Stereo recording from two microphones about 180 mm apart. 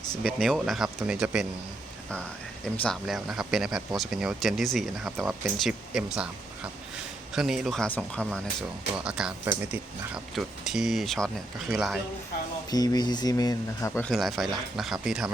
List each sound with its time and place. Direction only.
0.2 s speech: centre (ahead or behind)
2.7 s speech: 5° left (ahead or behind)
7.3 s speech: centre (ahead or behind)
12.7 s speech: 20° left (ahead or behind)
14.1 s speech: centre (ahead or behind)